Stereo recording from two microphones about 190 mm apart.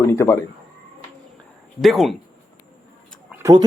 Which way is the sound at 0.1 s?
15° left (ahead or behind).